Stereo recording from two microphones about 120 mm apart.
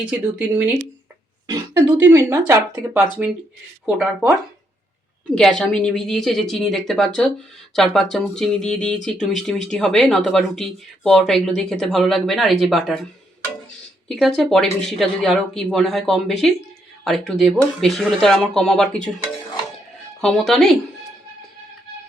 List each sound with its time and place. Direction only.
0.0 s speech: 15° right (ahead or behind)
1.7 s speech: 20° right (ahead or behind)
3.8 s speech: 5° right (ahead or behind)
5.3 s speech: 5° left (ahead or behind)
14.1 s speech: 5° left (ahead or behind)
20.2 s speech: 5° left (ahead or behind)